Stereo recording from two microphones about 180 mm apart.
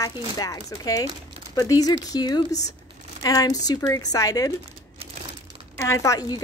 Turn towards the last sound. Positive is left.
turn(degrees=20)  # may be behind; listen again after turning